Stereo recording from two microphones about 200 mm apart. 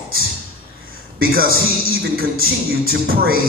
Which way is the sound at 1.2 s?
50° right (ahead or behind).